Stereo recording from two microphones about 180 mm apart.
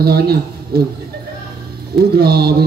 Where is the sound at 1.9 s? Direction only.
60° right (ahead or behind).